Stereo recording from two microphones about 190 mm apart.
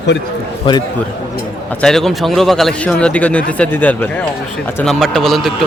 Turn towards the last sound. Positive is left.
turn(degrees=0)  # may be behind; listen again after turning